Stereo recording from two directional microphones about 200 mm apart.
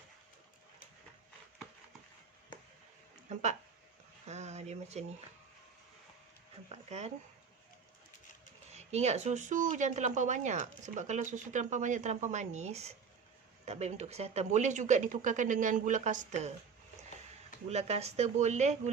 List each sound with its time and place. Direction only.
4.3 s speech: 35° right (ahead or behind)
6.7 s speech: 35° right (ahead or behind)
8.7 s speech: 35° right (ahead or behind)
17.7 s speech: 30° right (ahead or behind)